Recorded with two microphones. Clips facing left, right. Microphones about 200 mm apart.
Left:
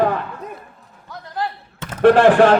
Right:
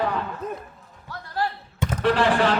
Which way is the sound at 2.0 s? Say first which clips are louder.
Left 10 dB; 50° left (ahead or behind).